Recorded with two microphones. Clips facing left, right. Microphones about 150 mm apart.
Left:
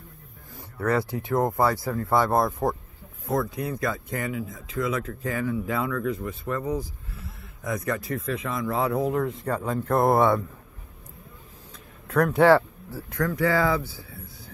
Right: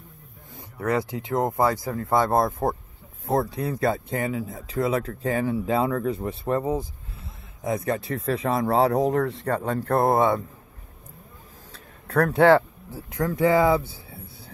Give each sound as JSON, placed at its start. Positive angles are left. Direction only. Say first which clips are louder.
{"t": 0.6, "sound": "speech", "louder": "even", "side_deg": -20}
{"t": 12.1, "sound": "speech", "louder": "right 1 dB", "side_deg": -30}
{"t": 12.9, "sound": "speech", "louder": "right 1 dB", "side_deg": -20}